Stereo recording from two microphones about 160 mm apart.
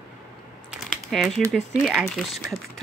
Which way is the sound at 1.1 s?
Centre (ahead or behind).